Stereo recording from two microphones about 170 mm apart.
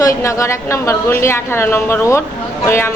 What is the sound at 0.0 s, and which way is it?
A woman's voice, 20° left (ahead or behind).